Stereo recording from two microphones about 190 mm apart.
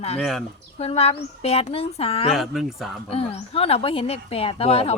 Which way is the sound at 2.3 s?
Centre (ahead or behind).